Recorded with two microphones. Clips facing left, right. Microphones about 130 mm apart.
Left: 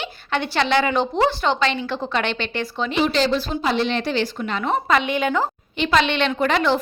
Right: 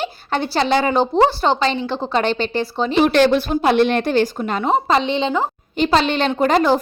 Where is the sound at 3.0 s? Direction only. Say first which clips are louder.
Right 6 dB; 60° right (ahead or behind); by 5.5 s 20° right (ahead or behind).